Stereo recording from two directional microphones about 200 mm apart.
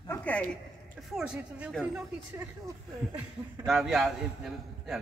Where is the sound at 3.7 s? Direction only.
Centre (ahead or behind).